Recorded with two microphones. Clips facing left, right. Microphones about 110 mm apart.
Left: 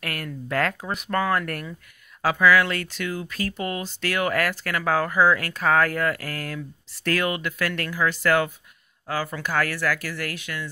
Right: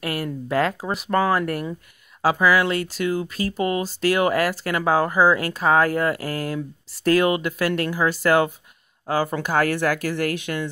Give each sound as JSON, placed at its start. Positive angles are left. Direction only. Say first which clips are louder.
{"t": 0.0, "sound": "speech", "louder": "right 6 dB", "side_deg": -15}
{"t": 2.5, "sound": "speech", "louder": "right 1 dB", "side_deg": -15}
{"t": 2.9, "sound": "speech", "louder": "right 6 dB", "side_deg": -30}
{"t": 7.9, "sound": "speech", "louder": "right 1 dB", "side_deg": -30}